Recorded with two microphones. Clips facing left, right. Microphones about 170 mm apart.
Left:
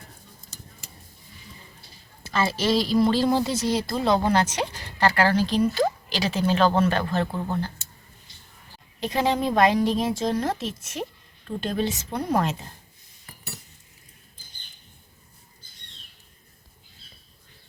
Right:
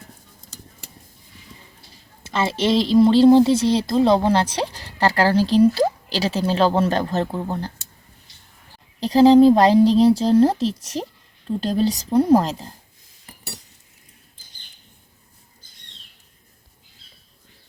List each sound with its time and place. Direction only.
2.2 s a woman's voice: 25° right (ahead or behind)
7.3 s speech: 15° right (ahead or behind)
9.0 s speech: 30° right (ahead or behind)